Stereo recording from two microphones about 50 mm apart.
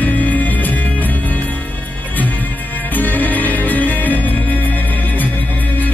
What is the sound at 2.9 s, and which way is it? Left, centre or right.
Music, left.